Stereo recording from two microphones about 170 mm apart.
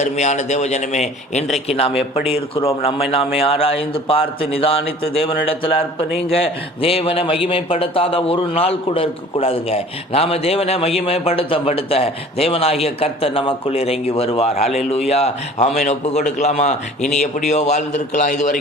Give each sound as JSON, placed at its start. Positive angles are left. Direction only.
{"t": 0.0, "sound": "a man's voice", "side_deg": 45}